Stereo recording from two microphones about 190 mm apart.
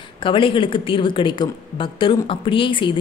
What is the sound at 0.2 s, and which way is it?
Speech, 25° left (ahead or behind).